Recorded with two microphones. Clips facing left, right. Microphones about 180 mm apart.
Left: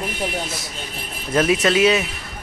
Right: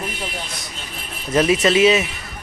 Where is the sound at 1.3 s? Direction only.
Centre (ahead or behind).